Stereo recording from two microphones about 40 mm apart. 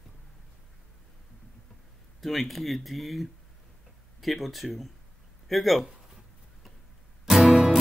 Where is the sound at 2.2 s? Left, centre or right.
Centre.